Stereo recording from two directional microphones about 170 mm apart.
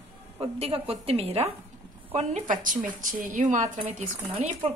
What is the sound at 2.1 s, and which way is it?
A woman's voice, 45° right (ahead or behind).